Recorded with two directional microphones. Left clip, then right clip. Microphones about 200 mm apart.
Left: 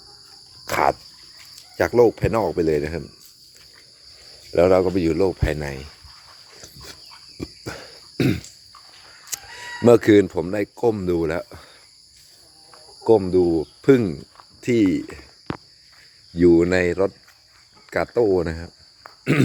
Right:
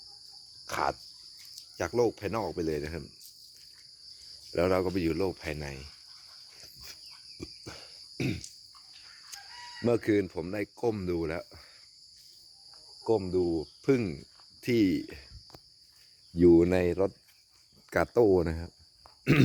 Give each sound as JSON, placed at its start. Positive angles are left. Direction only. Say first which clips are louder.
{"t": 0.6, "sound": "cricket", "louder": "left 11 dB", "side_deg": 15}
{"t": 1.7, "sound": "speech", "louder": "left 12 dB", "side_deg": 15}
{"t": 4.5, "sound": "speech", "louder": "left 11 dB", "side_deg": 5}
{"t": 7.3, "sound": "cricket", "louder": "left 12 dB", "side_deg": 20}
{"t": 9.3, "sound": "speech", "louder": "left 12 dB", "side_deg": 25}
{"t": 13.1, "sound": "cricket", "louder": "left 11 dB", "side_deg": 15}
{"t": 14.6, "sound": "speech", "louder": "left 8 dB", "side_deg": 0}
{"t": 16.3, "sound": "speech", "louder": "left 6 dB", "side_deg": -10}
{"t": 17.9, "sound": "speech", "louder": "left 5 dB", "side_deg": -25}